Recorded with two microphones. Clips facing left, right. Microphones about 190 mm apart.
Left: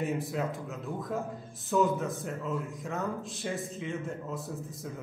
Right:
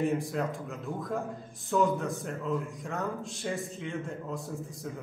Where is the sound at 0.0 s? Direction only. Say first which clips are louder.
Right 2 dB; 5° left (ahead or behind).